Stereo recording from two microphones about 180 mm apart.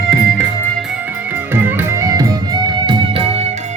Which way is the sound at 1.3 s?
10° right (ahead or behind).